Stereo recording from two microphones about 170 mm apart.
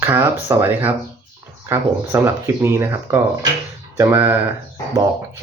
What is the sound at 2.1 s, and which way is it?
Speech, 15° right (ahead or behind).